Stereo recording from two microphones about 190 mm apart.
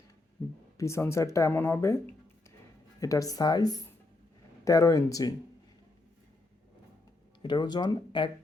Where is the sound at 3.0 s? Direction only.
20° left (ahead or behind).